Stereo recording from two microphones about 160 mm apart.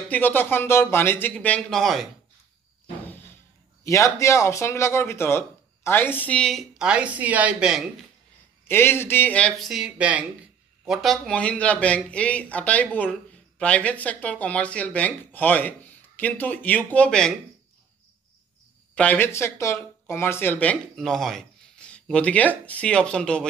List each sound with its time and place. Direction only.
0.1 s speech: 10° left (ahead or behind)
3.8 s a woman's voice: 20° left (ahead or behind); by 7.8 s 5° right (ahead or behind)
8.6 s speech: 15° left (ahead or behind)
18.9 s speech: 10° left (ahead or behind)